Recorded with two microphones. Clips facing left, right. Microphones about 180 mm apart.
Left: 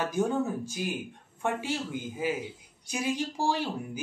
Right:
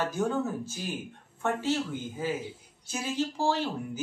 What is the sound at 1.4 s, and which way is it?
Speech, 15° left (ahead or behind).